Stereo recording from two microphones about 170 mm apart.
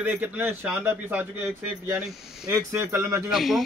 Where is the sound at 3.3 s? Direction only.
Centre (ahead or behind).